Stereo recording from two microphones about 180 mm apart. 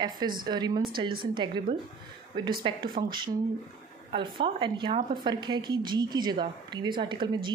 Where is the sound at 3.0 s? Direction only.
40° right (ahead or behind).